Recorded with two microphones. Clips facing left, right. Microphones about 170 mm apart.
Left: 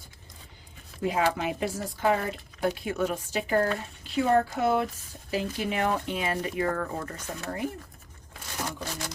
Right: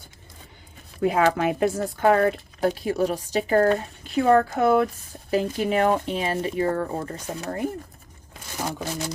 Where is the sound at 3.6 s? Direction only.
55° right (ahead or behind).